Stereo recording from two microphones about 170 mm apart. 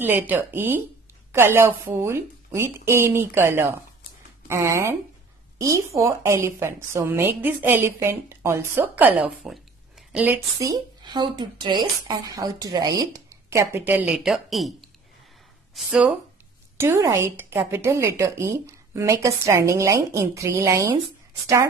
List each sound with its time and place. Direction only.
0.0 s a woman's voice: 10° right (ahead or behind)
10.6 s a woman's voice: 25° right (ahead or behind)